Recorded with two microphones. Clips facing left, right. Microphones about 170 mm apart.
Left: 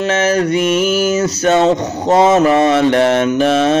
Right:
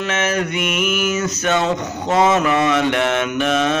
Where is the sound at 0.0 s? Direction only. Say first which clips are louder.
Left 6 dB; 35° left (ahead or behind).